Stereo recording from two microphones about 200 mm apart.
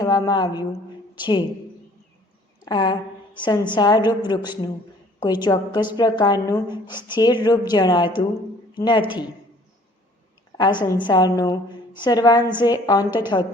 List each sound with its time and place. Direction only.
0.0 s a woman's voice: 20° left (ahead or behind)
2.6 s a woman's voice: 20° left (ahead or behind)
10.6 s a woman's voice: 20° left (ahead or behind)
12.4 s a woman's voice: 10° right (ahead or behind)
12.6 s a woman's voice: 20° left (ahead or behind)